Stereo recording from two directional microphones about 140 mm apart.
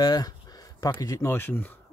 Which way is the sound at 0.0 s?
30° left (ahead or behind).